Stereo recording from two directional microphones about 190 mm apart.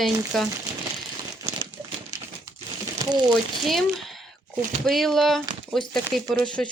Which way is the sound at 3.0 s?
20° right (ahead or behind).